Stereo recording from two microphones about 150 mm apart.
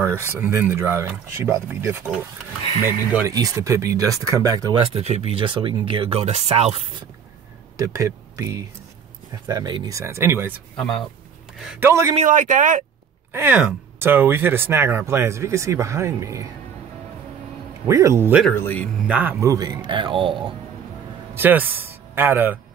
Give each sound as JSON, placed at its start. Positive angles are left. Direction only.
{"t": 0.0, "sound": "speech", "side_deg": -15}
{"t": 3.3, "sound": "speech", "side_deg": -20}
{"t": 4.7, "sound": "speech", "side_deg": -45}
{"t": 7.7, "sound": "speech", "side_deg": -20}
{"t": 10.8, "sound": "speech", "side_deg": 5}
{"t": 11.8, "sound": "speech", "side_deg": -20}
{"t": 12.2, "sound": "speech", "side_deg": -60}
{"t": 13.3, "sound": "speech", "side_deg": -15}
{"t": 17.8, "sound": "speech", "side_deg": -20}
{"t": 18.5, "sound": "speech", "side_deg": 15}
{"t": 19.0, "sound": "speech", "side_deg": -10}
{"t": 19.4, "sound": "speech", "side_deg": -25}
{"t": 21.4, "sound": "speech", "side_deg": -10}